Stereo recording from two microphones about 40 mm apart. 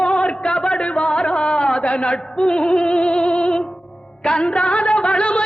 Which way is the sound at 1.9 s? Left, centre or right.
Left.